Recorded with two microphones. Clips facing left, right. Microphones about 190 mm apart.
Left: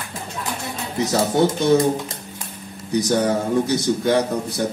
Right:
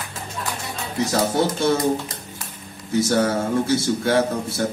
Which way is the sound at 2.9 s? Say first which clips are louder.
Even; 15° left (ahead or behind).